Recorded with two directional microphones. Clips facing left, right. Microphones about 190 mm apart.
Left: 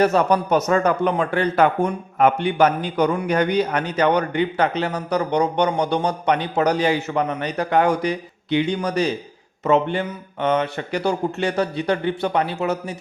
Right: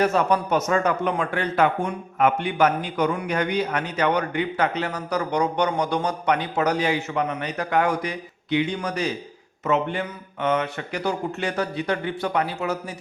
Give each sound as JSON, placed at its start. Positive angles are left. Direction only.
{"t": 0.0, "sound": "a man's voice", "side_deg": 40}